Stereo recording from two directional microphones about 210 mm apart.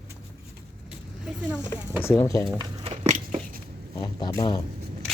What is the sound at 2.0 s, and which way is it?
Speech, 10° left (ahead or behind).